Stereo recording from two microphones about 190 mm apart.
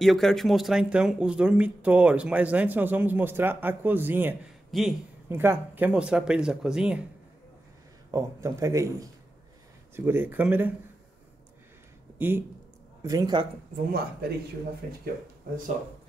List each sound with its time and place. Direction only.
0.0 s speech: centre (ahead or behind)
4.6 s speech: centre (ahead or behind)
5.3 s speech: 10° right (ahead or behind)
8.1 s speech: 15° right (ahead or behind)
12.2 s speech: 10° right (ahead or behind)